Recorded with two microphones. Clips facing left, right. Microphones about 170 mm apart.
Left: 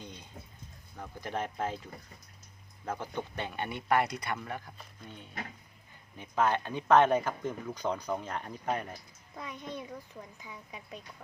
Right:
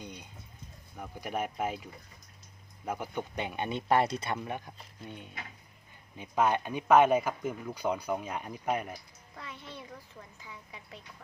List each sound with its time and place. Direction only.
0.0 s music: 15° right (ahead or behind)
0.9 s speech: 10° right (ahead or behind)
9.3 s a child's voice: 15° left (ahead or behind)